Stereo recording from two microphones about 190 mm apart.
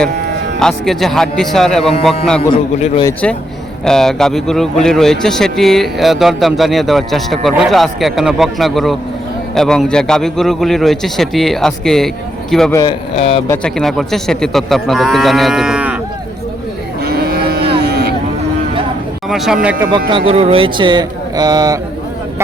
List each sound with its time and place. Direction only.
0.6 s speech: centre (ahead or behind)
2.5 s a man's voice: 30° left (ahead or behind)
3.8 s speech: 5° left (ahead or behind)
12.7 s a man's voice: 25° left (ahead or behind)
13.5 s speech: 5° left (ahead or behind)
17.0 s cattle: 55° right (ahead or behind)
19.3 s speech: centre (ahead or behind)
20.1 s speech: 30° right (ahead or behind)